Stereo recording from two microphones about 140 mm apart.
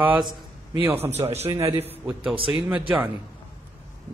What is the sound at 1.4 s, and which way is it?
Speech, 20° right (ahead or behind).